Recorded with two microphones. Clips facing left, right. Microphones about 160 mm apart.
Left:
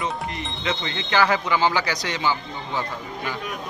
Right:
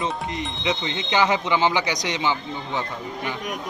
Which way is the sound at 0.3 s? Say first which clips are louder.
Right 2 dB; 20° right (ahead or behind).